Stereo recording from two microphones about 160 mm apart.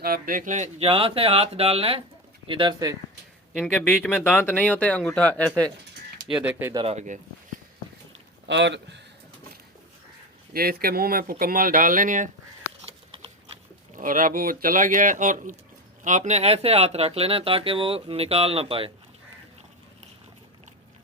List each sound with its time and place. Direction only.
0.0 s speech: 65° right (ahead or behind); by 2.9 s 25° right (ahead or behind)
3.6 s speech: 5° left (ahead or behind)
6.3 s speech: 10° right (ahead or behind)
6.9 s speech: 50° right (ahead or behind)
8.4 s speech: 90° right
10.5 s speech: 70° right (ahead or behind); by 12.3 s 55° right (ahead or behind)
13.9 s speech: 55° right (ahead or behind); by 18.9 s 35° right (ahead or behind)